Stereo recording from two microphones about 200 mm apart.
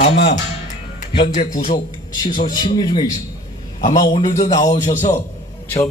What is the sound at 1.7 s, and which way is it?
A man's voice, 20° left (ahead or behind).